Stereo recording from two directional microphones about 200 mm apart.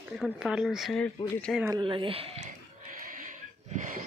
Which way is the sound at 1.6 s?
20° right (ahead or behind).